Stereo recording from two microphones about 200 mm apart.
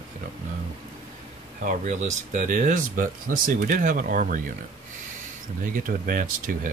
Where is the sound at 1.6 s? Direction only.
40° right (ahead or behind).